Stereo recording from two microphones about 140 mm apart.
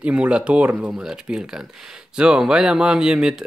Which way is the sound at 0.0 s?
10° right (ahead or behind).